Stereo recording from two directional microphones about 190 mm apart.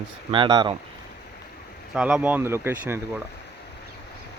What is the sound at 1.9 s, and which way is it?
Speech, 5° right (ahead or behind).